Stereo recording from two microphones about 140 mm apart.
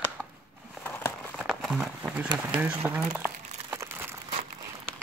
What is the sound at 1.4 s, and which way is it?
Speech, centre (ahead or behind).